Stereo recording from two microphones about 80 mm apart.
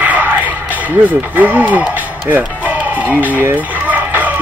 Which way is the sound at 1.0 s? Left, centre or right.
Centre.